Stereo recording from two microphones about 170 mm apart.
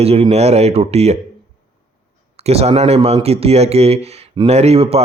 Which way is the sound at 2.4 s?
35° right (ahead or behind).